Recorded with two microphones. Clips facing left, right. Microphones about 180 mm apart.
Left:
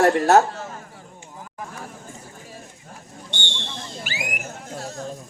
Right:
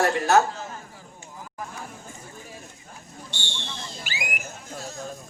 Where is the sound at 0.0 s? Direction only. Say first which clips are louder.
Left 4 dB; 45° left (ahead or behind).